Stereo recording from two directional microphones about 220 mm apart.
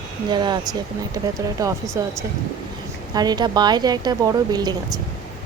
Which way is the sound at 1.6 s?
15° right (ahead or behind).